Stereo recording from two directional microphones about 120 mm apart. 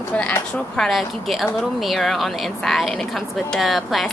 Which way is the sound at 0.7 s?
Centre (ahead or behind).